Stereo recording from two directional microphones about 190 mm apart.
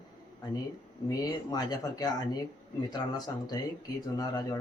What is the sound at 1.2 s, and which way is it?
Speech, 20° left (ahead or behind).